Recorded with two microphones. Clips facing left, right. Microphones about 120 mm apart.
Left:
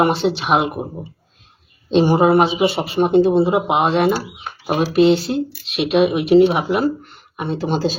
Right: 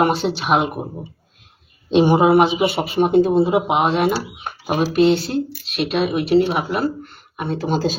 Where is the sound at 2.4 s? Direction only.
55° right (ahead or behind).